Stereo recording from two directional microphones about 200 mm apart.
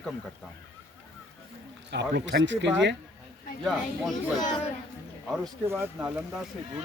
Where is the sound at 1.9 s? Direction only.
60° right (ahead or behind).